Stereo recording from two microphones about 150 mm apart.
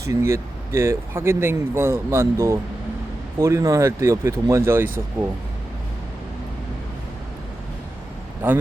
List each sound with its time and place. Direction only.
0.1 s speech: 20° right (ahead or behind)